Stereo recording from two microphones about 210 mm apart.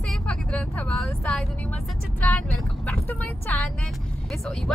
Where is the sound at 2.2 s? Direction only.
5° left (ahead or behind).